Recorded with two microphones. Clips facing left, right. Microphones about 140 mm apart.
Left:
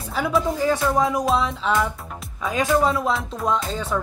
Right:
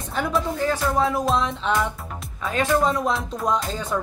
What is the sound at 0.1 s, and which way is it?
Speech, 5° left (ahead or behind).